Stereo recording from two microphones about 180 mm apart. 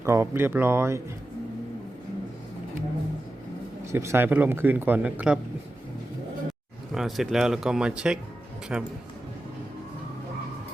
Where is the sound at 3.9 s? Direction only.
15° right (ahead or behind).